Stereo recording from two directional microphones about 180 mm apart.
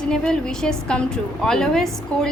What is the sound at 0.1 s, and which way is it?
A woman's voice, 5° left (ahead or behind).